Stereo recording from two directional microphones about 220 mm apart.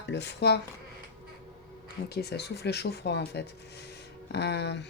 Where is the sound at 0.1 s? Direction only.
50° left (ahead or behind).